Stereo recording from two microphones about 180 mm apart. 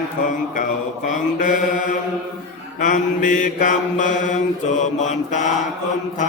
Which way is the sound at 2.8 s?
45° left (ahead or behind).